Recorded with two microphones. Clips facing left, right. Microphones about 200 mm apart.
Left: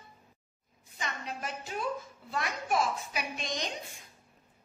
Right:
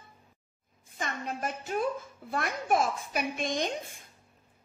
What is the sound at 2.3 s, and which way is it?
Speech, 50° right (ahead or behind).